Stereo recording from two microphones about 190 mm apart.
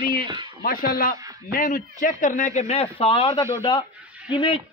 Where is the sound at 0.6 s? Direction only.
50° left (ahead or behind); by 3.3 s 30° left (ahead or behind).